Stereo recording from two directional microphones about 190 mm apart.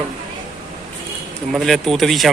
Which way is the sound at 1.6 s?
Centre (ahead or behind).